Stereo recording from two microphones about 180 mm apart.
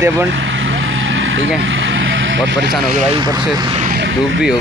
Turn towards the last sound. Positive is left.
turn(degrees=-90)